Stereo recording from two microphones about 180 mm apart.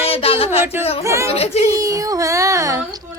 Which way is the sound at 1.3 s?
35° left (ahead or behind).